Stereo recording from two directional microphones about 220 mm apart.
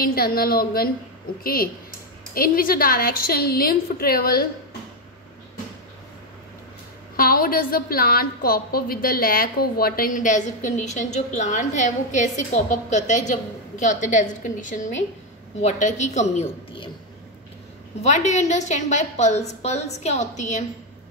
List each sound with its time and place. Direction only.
0.0 s a woman's voice: 45° left (ahead or behind)
7.2 s a woman's voice: 40° left (ahead or behind)
18.0 s a woman's voice: 30° left (ahead or behind)